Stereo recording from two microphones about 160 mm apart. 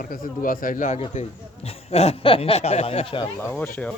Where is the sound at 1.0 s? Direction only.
40° left (ahead or behind).